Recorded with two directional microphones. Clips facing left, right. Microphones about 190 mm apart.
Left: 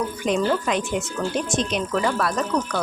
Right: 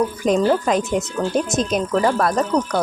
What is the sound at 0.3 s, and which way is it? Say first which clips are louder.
Speech: right 4 dB; 40° right (ahead or behind).